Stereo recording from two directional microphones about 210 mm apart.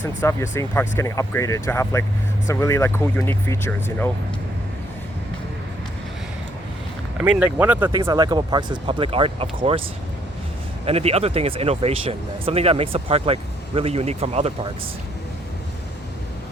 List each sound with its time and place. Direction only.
0.0 s speech: 10° left (ahead or behind)
7.2 s speech: 5° right (ahead or behind); by 9.5 s 25° right (ahead or behind)
10.8 s speech: 30° right (ahead or behind)